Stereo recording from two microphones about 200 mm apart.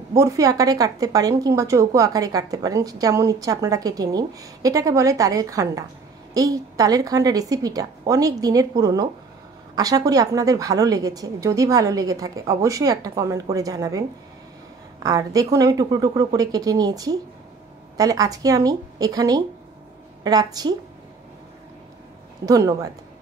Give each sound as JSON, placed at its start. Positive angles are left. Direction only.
{"t": 0.1, "sound": "a woman's voice", "side_deg": -15}
{"t": 15.0, "sound": "a woman's voice", "side_deg": -15}
{"t": 22.5, "sound": "a woman's voice", "side_deg": -15}